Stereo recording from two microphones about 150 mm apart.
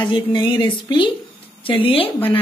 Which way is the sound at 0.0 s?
30° left (ahead or behind).